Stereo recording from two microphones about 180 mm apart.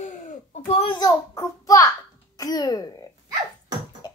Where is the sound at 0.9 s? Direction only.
20° left (ahead or behind).